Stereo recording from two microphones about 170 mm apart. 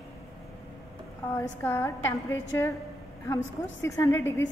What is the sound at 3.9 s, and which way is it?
Speech, 15° left (ahead or behind).